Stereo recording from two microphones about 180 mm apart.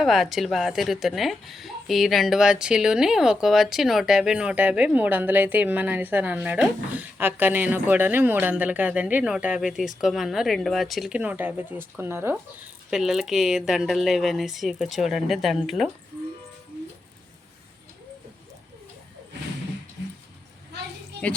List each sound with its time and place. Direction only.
0.0 s a woman's voice: centre (ahead or behind)
12.9 s a woman's voice: centre (ahead or behind)